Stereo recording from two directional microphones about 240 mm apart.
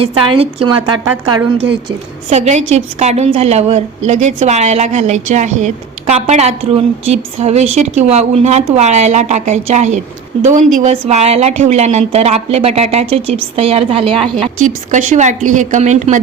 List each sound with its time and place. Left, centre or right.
0.0 s a woman's voice: right
2.3 s a woman's voice: right